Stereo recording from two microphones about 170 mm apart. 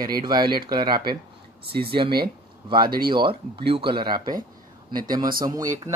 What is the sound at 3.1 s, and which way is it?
Speech, 30° right (ahead or behind).